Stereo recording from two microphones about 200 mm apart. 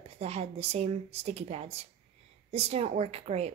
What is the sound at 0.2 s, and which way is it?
A woman's voice, 30° right (ahead or behind).